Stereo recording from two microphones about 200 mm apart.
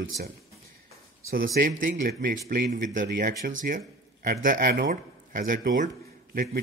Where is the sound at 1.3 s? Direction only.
45° right (ahead or behind).